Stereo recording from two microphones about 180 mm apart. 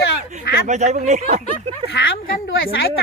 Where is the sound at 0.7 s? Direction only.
40° right (ahead or behind).